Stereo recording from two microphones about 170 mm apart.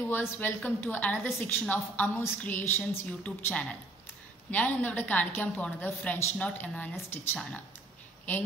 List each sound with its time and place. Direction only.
0.0 s a woman's voice: 10° left (ahead or behind)